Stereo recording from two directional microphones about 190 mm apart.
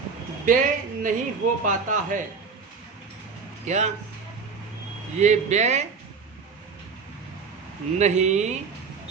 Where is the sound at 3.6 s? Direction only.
40° right (ahead or behind).